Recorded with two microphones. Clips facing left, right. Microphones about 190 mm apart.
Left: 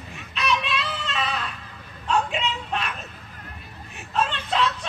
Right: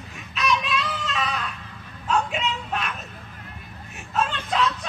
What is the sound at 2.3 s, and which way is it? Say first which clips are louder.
Speech: even; centre (ahead or behind).